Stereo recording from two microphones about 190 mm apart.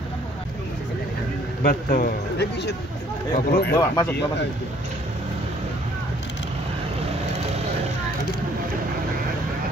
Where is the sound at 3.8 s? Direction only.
15° left (ahead or behind).